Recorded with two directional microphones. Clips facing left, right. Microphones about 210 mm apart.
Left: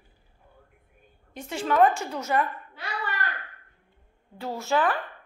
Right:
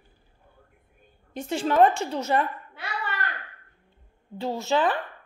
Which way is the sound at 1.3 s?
30° right (ahead or behind).